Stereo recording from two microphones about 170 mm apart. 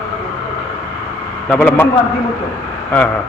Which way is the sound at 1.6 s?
15° left (ahead or behind).